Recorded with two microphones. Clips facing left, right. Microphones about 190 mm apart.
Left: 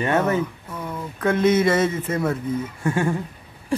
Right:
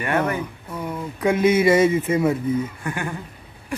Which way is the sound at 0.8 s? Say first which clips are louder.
Right 2 dB; 10° right (ahead or behind).